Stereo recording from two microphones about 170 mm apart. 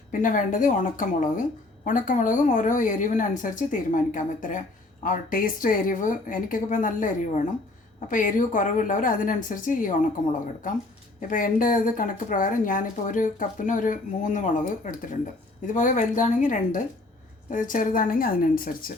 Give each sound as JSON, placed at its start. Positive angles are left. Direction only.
{"t": 0.1, "sound": "a woman's voice", "side_deg": 50}
{"t": 11.2, "sound": "a woman's voice", "side_deg": 50}